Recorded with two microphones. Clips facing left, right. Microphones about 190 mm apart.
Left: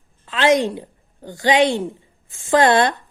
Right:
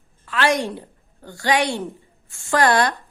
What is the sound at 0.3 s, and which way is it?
A woman's voice, 20° left (ahead or behind).